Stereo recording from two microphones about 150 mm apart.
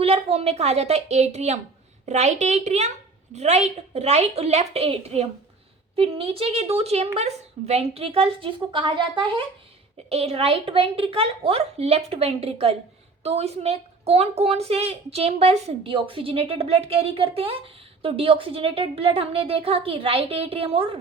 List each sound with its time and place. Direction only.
0.0 s a woman's voice: 40° right (ahead or behind)